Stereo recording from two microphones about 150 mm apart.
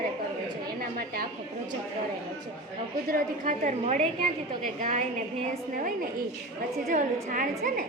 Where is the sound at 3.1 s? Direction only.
65° right (ahead or behind).